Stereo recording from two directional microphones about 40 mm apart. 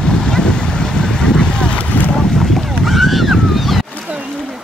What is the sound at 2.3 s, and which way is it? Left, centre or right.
Goose, centre.